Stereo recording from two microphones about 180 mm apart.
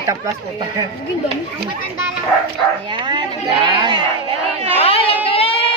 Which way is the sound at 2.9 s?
25° right (ahead or behind).